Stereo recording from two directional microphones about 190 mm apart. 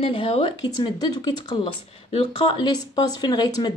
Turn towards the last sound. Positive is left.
turn(degrees=20)  # may be behind; listen again after turning